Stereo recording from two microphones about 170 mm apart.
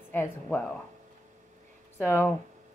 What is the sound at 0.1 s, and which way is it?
Speech, 10° left (ahead or behind).